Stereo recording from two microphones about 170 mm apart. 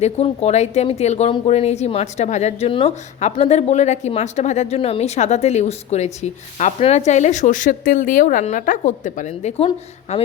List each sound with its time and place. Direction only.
0.0 s speech: 40° left (ahead or behind)